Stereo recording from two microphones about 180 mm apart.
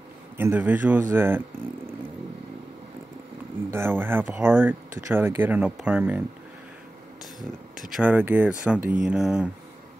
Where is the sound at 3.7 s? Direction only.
10° right (ahead or behind).